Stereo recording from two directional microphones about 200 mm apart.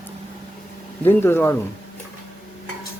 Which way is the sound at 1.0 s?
10° left (ahead or behind).